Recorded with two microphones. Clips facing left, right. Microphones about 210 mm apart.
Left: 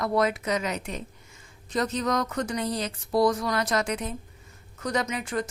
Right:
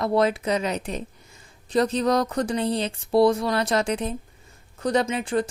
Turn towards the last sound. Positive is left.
turn(degrees=-30)  # may be behind; listen again after turning